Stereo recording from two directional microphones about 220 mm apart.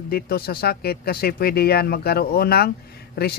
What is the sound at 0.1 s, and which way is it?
Speech, 45° left (ahead or behind).